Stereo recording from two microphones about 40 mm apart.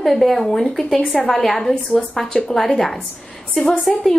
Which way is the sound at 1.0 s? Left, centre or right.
Centre.